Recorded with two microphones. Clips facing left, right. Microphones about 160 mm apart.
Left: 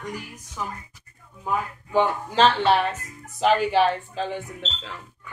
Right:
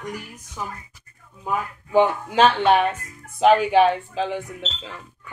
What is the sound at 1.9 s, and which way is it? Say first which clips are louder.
Speech: right 4 dB; 10° right (ahead or behind).